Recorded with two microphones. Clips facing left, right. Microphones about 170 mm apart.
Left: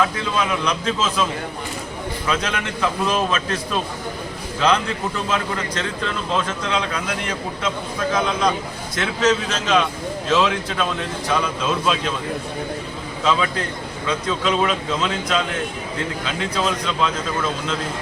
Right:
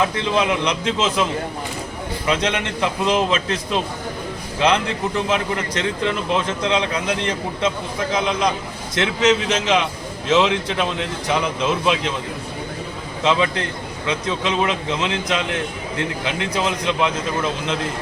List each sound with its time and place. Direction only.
0.0 s a man's voice: 20° right (ahead or behind)
14.1 s a man's voice: 20° right (ahead or behind)